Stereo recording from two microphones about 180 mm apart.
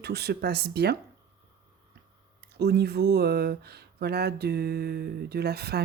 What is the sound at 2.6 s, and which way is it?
Speech, 60° right (ahead or behind).